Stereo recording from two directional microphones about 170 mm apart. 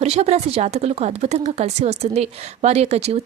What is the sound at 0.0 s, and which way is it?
Speech, 40° right (ahead or behind).